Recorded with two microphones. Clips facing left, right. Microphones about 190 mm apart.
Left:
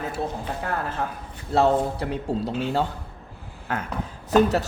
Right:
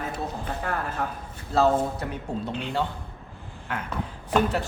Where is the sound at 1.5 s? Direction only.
30° left (ahead or behind).